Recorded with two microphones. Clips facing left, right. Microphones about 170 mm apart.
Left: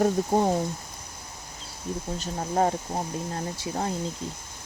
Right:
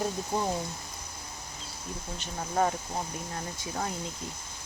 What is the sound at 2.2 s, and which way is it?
Speech, 35° left (ahead or behind).